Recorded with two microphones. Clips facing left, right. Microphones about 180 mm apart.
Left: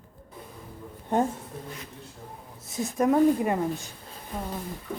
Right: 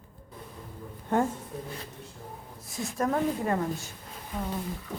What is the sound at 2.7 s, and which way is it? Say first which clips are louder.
Speech: left 6 dB; 20° left (ahead or behind).